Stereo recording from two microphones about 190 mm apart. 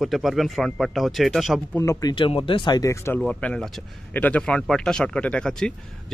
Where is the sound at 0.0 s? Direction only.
Centre (ahead or behind).